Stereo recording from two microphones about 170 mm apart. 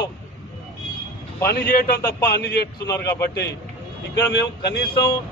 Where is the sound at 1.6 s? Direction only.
60° left (ahead or behind).